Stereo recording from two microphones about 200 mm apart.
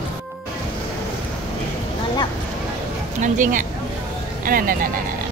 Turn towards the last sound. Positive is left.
turn(degrees=-45)  # may be behind; listen again after turning